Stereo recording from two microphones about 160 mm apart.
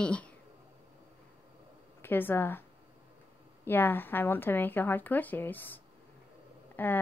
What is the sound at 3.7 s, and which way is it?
Speech, 10° left (ahead or behind).